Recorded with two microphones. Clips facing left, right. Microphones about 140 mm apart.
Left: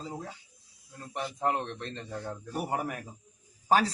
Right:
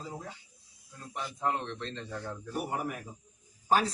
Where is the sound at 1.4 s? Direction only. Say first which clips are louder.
Left 2 dB; 20° left (ahead or behind).